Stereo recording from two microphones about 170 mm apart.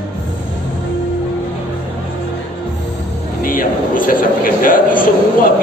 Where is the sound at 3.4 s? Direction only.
55° left (ahead or behind).